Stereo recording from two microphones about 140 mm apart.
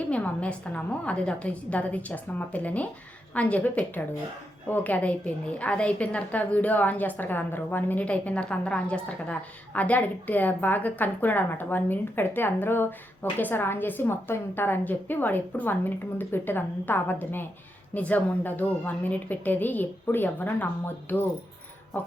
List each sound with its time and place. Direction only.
0.1 s a woman's voice: 10° left (ahead or behind)